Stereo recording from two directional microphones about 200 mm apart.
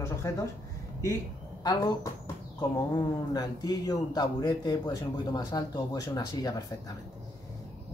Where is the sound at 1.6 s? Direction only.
20° left (ahead or behind).